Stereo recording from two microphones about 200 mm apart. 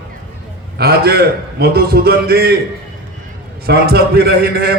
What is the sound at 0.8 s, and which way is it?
A man's voice, 50° right (ahead or behind).